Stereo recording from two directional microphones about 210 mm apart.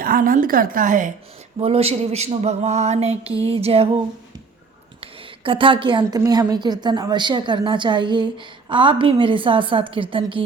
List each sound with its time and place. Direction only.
0.0 s a woman's voice: 40° right (ahead or behind)
1.5 s a woman's voice: 30° right (ahead or behind)
5.4 s a woman's voice: 25° right (ahead or behind)